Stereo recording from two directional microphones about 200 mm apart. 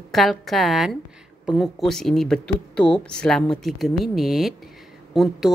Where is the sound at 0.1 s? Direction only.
Centre (ahead or behind).